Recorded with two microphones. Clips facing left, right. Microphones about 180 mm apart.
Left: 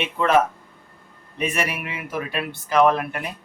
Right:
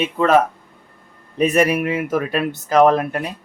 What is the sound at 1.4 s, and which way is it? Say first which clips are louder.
Speech: right 10 dB; 40° right (ahead or behind).